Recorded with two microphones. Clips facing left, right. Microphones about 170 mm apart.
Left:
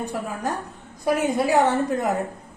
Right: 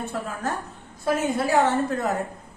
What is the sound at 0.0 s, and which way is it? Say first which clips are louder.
A woman's voice: left 2 dB; 15° left (ahead or behind).